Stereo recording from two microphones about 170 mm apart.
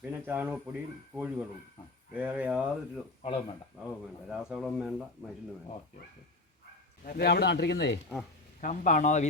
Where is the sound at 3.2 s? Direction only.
30° left (ahead or behind).